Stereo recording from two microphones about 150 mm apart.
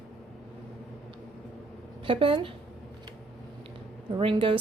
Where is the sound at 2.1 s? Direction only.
35° right (ahead or behind).